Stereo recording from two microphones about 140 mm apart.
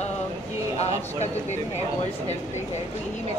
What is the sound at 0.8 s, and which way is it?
Speech, 50° left (ahead or behind).